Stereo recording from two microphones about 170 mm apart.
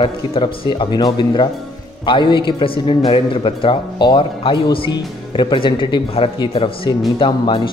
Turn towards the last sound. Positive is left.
turn(degrees=30)  # may be behind; listen again after turning